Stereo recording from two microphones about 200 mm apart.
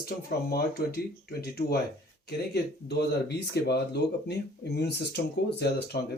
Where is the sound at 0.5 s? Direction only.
50° left (ahead or behind).